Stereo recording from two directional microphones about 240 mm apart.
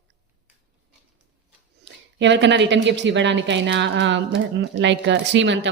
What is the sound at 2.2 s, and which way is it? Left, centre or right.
A woman's voice, right.